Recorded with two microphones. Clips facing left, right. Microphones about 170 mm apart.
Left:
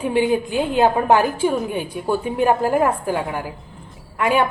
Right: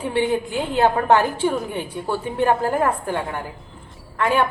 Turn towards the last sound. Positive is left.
turn(degrees=15)  # may be behind; listen again after turning